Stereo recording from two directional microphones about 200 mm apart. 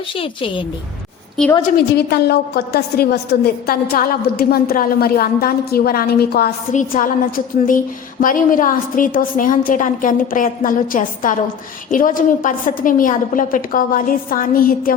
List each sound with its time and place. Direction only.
0.1 s a woman's voice: 25° left (ahead or behind)
2.0 s a woman's voice: 55° left (ahead or behind)